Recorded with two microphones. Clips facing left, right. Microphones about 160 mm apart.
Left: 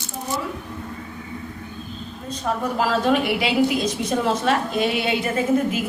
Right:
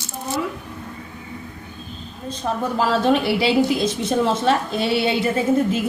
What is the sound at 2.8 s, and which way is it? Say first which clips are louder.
A woman's voice: right 2 dB; 30° right (ahead or behind).